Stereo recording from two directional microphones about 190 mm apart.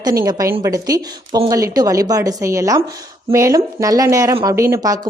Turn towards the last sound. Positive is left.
turn(degrees=-20)  # may be behind; listen again after turning